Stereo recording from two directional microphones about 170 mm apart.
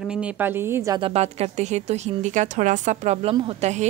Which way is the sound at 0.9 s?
35° right (ahead or behind).